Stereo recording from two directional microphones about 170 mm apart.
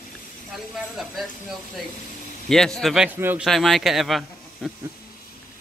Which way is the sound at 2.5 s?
5° left (ahead or behind).